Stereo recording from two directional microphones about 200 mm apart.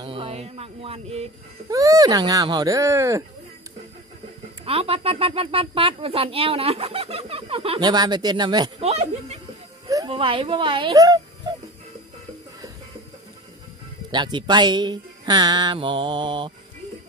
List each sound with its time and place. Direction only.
0.0 s speech: 25° right (ahead or behind)
1.7 s speech: 15° right (ahead or behind)
4.6 s speech: 30° right (ahead or behind)
14.1 s speech: 20° right (ahead or behind)